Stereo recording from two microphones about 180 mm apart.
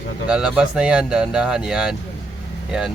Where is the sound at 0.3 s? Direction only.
5° right (ahead or behind).